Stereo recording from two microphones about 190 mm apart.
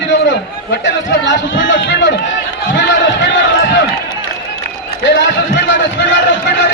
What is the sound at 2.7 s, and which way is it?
Run, 70° left (ahead or behind).